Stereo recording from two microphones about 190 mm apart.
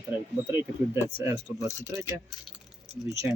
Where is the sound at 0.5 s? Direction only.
15° right (ahead or behind).